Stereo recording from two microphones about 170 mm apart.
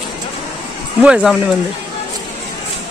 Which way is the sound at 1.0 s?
5° right (ahead or behind).